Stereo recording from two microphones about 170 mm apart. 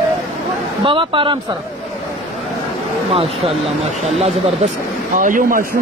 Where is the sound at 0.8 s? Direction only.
30° right (ahead or behind).